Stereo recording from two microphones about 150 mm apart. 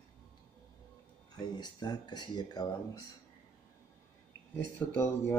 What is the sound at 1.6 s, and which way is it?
Speech, 30° left (ahead or behind).